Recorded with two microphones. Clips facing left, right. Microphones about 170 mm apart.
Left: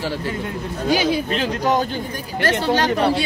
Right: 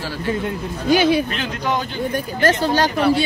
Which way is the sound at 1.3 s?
35° left (ahead or behind).